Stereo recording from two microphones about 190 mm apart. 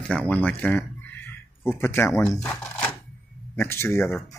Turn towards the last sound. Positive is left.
turn(degrees=15)  # may be behind; listen again after turning